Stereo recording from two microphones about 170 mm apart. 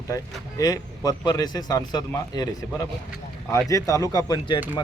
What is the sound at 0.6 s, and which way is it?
Speech, 20° left (ahead or behind).